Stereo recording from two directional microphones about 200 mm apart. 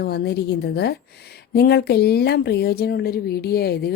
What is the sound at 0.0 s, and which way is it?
A woman's voice, 55° left (ahead or behind).